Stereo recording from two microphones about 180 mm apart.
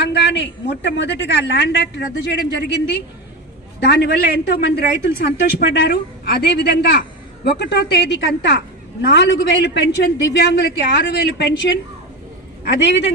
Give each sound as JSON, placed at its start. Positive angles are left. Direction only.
{"t": 0.0, "sound": "a man's voice", "side_deg": 75}
{"t": 10.3, "sound": "a man's voice", "side_deg": 65}
{"t": 12.8, "sound": "a man's voice", "side_deg": 75}